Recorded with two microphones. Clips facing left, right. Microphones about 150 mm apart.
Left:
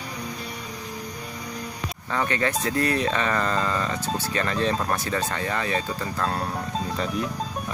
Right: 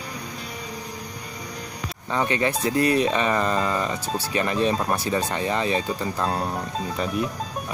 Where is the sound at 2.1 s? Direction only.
20° right (ahead or behind).